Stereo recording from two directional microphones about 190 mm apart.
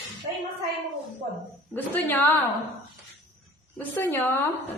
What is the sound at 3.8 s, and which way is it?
Speech, 10° left (ahead or behind).